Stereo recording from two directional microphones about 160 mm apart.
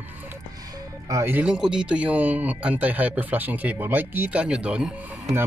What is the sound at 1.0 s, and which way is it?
Speech, 15° right (ahead or behind).